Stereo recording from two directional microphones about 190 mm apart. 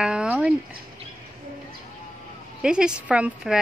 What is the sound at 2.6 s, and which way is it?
Speech, 5° right (ahead or behind).